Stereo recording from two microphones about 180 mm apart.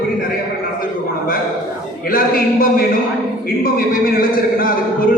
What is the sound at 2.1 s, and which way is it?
A man's voice, 50° left (ahead or behind).